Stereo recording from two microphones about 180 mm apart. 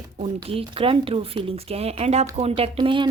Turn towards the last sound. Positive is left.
turn(degrees=-25)  # may be behind; listen again after turning